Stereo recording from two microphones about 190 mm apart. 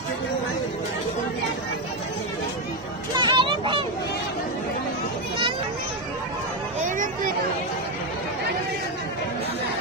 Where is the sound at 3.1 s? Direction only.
25° right (ahead or behind).